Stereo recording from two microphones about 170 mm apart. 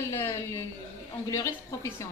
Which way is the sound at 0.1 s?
15° left (ahead or behind).